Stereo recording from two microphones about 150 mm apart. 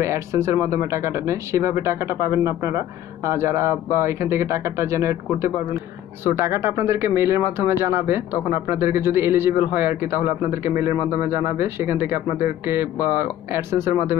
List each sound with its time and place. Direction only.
0.0 s speech: 20° right (ahead or behind)